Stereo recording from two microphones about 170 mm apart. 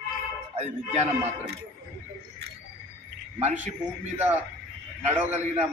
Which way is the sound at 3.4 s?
45° right (ahead or behind).